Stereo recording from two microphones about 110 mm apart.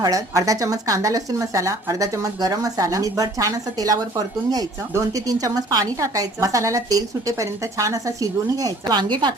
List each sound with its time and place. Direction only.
0.0 s speech: 30° right (ahead or behind)